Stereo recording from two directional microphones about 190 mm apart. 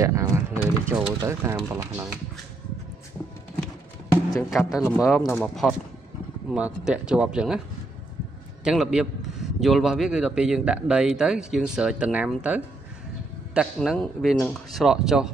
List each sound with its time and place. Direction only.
0.0 s a sound: 15° right (ahead or behind)
4.4 s a man's voice: centre (ahead or behind)
8.6 s a man's voice: centre (ahead or behind)